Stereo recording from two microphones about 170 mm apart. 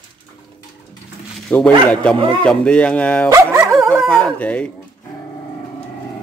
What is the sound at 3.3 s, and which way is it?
Dog, 15° right (ahead or behind).